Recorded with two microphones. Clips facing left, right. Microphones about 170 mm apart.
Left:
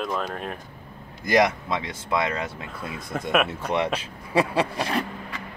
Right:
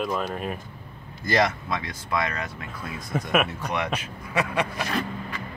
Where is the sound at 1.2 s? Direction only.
15° left (ahead or behind).